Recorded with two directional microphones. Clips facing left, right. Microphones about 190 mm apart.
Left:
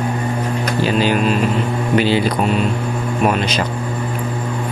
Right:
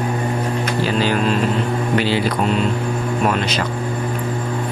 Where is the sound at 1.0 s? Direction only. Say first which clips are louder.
Left 1 dB; 15° left (ahead or behind).